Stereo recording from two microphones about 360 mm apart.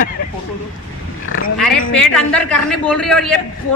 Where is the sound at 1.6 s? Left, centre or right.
Centre.